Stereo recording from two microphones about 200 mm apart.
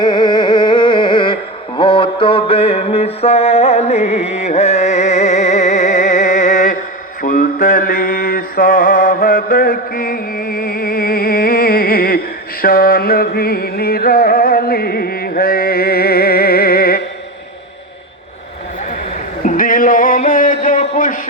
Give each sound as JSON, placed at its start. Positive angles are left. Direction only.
{"t": 0.0, "sound": "music", "side_deg": 20}
{"t": 7.2, "sound": "mantra", "side_deg": 40}
{"t": 12.6, "sound": "music", "side_deg": 50}
{"t": 19.5, "sound": "a sound", "side_deg": 45}